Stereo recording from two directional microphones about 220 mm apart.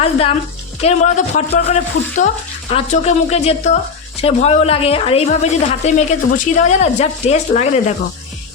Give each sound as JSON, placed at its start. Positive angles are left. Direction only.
{"t": 0.0, "sound": "a woman's voice", "side_deg": 25}